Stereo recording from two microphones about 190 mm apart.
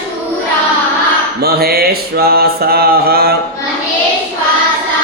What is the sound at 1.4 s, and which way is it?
Music, 55° right (ahead or behind).